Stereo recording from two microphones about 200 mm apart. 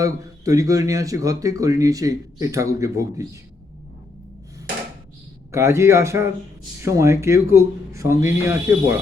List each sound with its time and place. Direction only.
0.0 s speech: 15° right (ahead or behind)
5.5 s speech: 15° right (ahead or behind)